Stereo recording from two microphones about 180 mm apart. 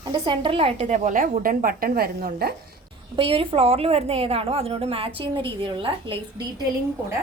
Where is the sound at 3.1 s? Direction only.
30° right (ahead or behind).